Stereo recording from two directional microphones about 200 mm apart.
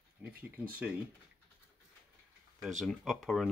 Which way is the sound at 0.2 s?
10° right (ahead or behind).